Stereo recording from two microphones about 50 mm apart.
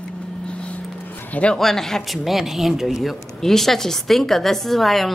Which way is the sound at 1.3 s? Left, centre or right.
Left.